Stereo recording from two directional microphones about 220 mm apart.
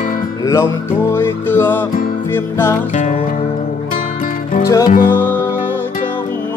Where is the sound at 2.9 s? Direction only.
30° left (ahead or behind).